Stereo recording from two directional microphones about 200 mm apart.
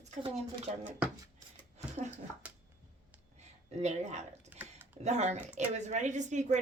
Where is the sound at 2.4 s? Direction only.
5° right (ahead or behind).